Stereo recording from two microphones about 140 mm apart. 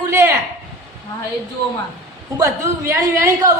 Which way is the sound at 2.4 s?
20° right (ahead or behind).